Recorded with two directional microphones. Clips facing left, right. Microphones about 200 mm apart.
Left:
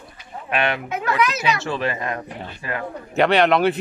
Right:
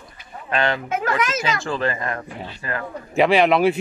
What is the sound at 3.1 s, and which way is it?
Speech, centre (ahead or behind).